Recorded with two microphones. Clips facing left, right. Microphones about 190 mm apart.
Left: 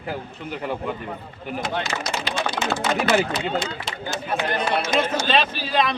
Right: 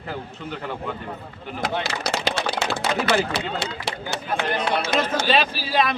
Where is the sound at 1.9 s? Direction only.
70° right (ahead or behind).